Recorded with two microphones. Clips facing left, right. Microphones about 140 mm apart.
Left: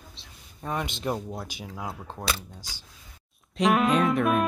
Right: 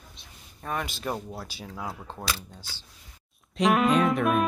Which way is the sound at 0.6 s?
20° left (ahead or behind).